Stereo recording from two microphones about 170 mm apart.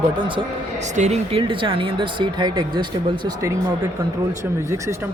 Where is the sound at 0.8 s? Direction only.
45° right (ahead or behind).